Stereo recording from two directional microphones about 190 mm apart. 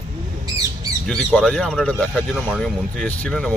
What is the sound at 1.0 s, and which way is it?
Speech, centre (ahead or behind).